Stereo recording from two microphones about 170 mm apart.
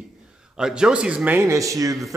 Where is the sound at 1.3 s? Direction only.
20° right (ahead or behind).